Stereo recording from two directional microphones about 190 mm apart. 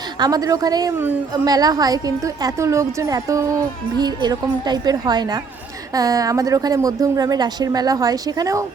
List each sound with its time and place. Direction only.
0.2 s a woman's voice: 20° right (ahead or behind)